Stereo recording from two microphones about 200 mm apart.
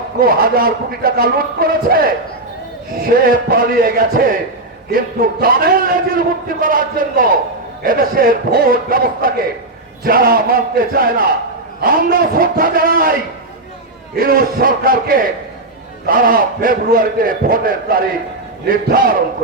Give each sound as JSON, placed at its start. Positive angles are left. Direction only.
{"t": 0.2, "sound": "a man's voice", "side_deg": -45}
{"t": 14.2, "sound": "a man's voice", "side_deg": -45}